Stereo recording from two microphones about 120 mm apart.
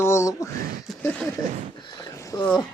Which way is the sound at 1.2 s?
Centre (ahead or behind).